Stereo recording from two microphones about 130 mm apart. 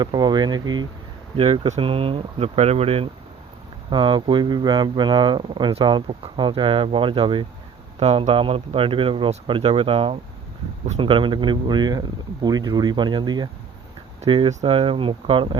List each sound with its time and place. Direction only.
0.0 s speech: 35° right (ahead or behind)
1.4 s speech: 50° right (ahead or behind)
1.8 s speech: 45° right (ahead or behind)
7.9 s speech: 55° right (ahead or behind); by 13.5 s 35° right (ahead or behind)
14.3 s speech: 45° right (ahead or behind)